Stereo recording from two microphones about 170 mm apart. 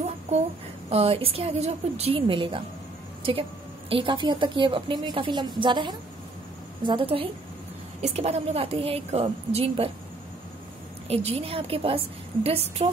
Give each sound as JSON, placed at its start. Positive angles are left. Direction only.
{"t": 0.8, "sound": "a woman's voice", "side_deg": -35}
{"t": 3.9, "sound": "a woman's voice", "side_deg": -30}
{"t": 11.1, "sound": "a woman's voice", "side_deg": -35}